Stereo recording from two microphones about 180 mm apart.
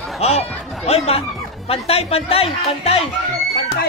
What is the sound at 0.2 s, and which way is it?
Speech, 35° left (ahead or behind).